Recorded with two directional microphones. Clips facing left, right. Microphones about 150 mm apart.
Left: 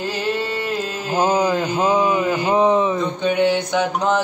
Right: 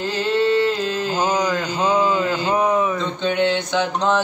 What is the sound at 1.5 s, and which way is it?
Mantra, 20° left (ahead or behind).